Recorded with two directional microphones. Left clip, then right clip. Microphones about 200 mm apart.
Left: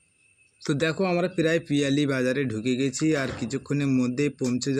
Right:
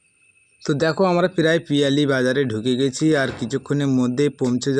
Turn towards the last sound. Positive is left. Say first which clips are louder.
# right 6 dB
turn(degrees=-20)  # may be behind; listen again after turning